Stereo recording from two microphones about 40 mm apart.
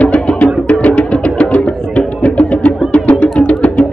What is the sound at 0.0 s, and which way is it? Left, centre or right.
Music, left.